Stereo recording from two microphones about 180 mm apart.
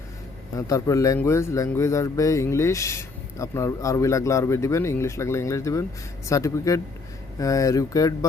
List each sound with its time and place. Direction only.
0.7 s speech: 15° left (ahead or behind)